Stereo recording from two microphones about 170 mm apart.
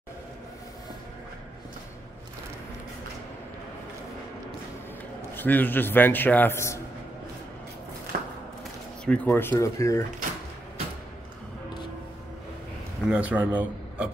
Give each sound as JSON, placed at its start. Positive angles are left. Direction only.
{"t": 5.3, "sound": "a man's voice", "side_deg": 10}
{"t": 8.1, "sound": "a sound", "side_deg": -60}
{"t": 9.0, "sound": "a man's voice", "side_deg": 5}
{"t": 13.1, "sound": "speech", "side_deg": -10}